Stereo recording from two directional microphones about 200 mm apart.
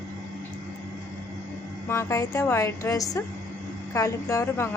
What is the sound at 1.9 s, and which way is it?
A woman's voice, 15° left (ahead or behind).